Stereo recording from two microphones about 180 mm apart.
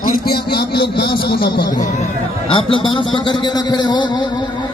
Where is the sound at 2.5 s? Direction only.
30° left (ahead or behind).